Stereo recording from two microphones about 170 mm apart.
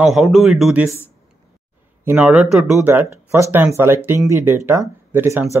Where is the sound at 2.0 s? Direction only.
10° right (ahead or behind).